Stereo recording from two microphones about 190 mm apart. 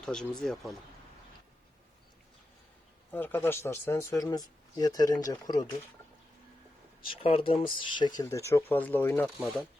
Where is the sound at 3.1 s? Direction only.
10° left (ahead or behind).